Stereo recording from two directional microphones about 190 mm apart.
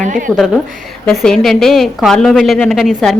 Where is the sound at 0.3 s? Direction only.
Centre (ahead or behind).